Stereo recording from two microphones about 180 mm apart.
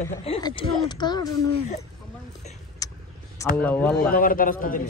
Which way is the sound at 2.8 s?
20° left (ahead or behind).